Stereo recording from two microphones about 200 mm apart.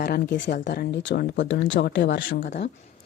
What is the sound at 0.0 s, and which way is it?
A woman's voice, 55° left (ahead or behind).